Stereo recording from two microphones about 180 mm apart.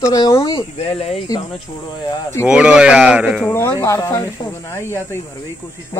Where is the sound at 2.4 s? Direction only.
5° right (ahead or behind).